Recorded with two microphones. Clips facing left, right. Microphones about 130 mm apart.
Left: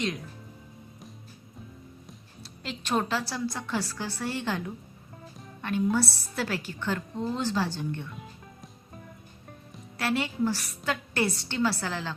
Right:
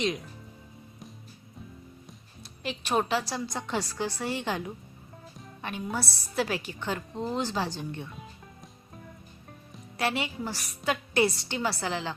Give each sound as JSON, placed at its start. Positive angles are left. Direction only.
{"t": 2.4, "sound": "a woman's voice", "side_deg": -15}
{"t": 10.0, "sound": "a woman's voice", "side_deg": -15}